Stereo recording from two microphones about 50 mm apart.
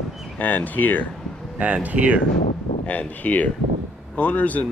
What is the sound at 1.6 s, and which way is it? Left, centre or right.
Speech, right.